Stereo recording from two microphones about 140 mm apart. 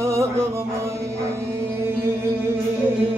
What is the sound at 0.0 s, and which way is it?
Music, 20° right (ahead or behind).